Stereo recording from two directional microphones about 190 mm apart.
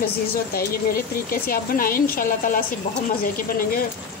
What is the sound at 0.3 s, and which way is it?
Speech, 50° left (ahead or behind).